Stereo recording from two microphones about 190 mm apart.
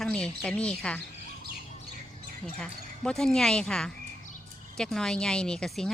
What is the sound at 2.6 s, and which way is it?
Speech, 5° left (ahead or behind).